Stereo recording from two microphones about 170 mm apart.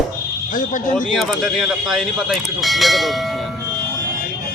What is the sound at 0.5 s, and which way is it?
Speech, 50° left (ahead or behind).